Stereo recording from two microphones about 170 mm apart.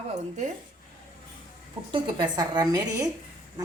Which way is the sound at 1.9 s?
25° right (ahead or behind).